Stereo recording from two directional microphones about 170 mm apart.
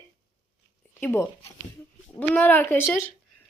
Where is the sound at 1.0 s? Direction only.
15° left (ahead or behind).